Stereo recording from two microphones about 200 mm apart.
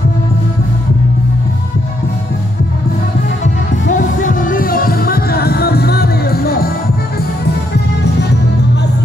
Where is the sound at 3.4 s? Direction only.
40° left (ahead or behind).